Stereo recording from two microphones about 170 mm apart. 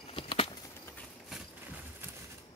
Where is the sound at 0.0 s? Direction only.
30° left (ahead or behind).